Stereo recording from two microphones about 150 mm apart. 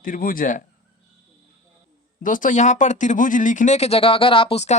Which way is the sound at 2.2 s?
60° left (ahead or behind).